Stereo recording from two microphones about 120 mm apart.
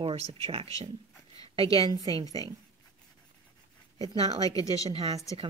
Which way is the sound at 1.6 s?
30° left (ahead or behind).